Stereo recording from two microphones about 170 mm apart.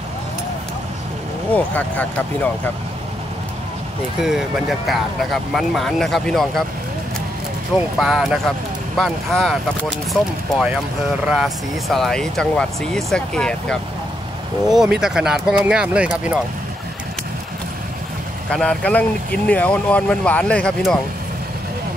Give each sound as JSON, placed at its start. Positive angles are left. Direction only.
{"t": 1.5, "sound": "speech", "side_deg": 10}
{"t": 4.2, "sound": "speech", "side_deg": 0}
{"t": 8.0, "sound": "speech", "side_deg": 0}
{"t": 18.5, "sound": "speech", "side_deg": 5}